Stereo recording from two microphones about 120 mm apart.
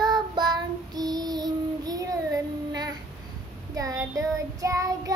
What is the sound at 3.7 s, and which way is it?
Child singing, 30° right (ahead or behind).